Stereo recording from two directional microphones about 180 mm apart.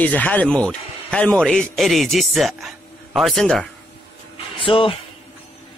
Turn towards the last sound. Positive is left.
turn(degrees=30)  # may be behind; listen again after turning